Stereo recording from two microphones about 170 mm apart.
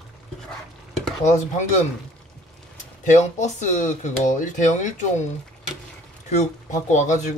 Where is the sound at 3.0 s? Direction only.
45° left (ahead or behind).